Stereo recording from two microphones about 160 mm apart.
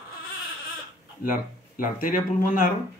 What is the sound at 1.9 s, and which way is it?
Speech, 60° left (ahead or behind).